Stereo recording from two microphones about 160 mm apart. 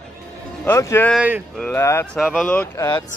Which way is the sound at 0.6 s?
15° left (ahead or behind).